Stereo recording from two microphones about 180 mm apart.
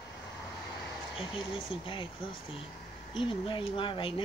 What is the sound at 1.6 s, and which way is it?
Speech, 30° left (ahead or behind).